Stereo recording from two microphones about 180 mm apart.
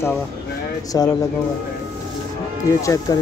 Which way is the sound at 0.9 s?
20° left (ahead or behind).